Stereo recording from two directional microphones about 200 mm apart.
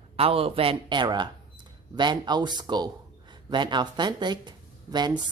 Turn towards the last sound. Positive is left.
turn(degrees=-20)  # may be behind; listen again after turning